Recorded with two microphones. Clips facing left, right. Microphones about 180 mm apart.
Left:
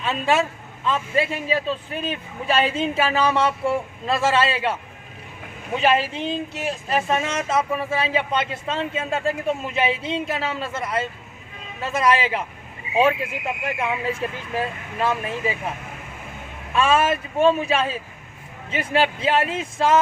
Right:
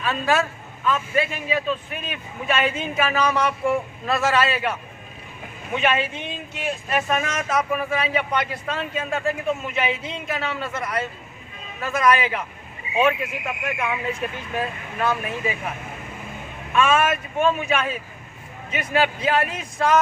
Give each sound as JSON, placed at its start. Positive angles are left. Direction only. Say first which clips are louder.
{"t": 0.0, "sound": "a man's voice", "louder": "left 1 dB", "side_deg": 25}
{"t": 16.7, "sound": "speech", "louder": "even", "side_deg": 30}